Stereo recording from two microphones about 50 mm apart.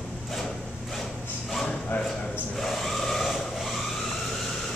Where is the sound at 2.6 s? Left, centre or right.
Centre.